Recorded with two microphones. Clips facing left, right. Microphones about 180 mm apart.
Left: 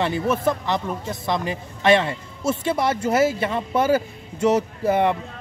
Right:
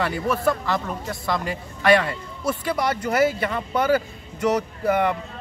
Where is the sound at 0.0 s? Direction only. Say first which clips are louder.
Left 1 dB; 20° left (ahead or behind).